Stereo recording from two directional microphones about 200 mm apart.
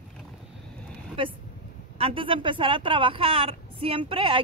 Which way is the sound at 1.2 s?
25° right (ahead or behind).